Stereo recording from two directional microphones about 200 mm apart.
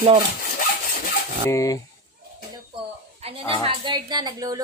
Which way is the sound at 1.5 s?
15° left (ahead or behind).